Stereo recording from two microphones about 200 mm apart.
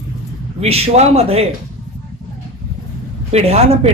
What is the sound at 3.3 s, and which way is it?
Speech, 30° right (ahead or behind).